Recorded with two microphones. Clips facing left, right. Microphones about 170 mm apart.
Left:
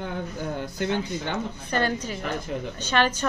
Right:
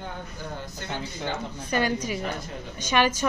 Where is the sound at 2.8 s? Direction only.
10° right (ahead or behind).